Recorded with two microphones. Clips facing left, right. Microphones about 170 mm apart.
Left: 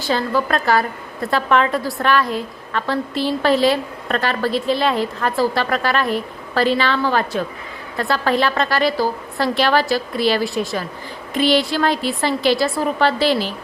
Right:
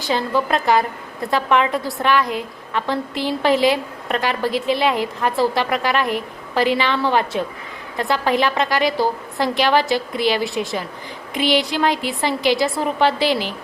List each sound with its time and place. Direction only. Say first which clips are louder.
0.0 s a woman's voice: left 1 dB; 20° right (ahead or behind)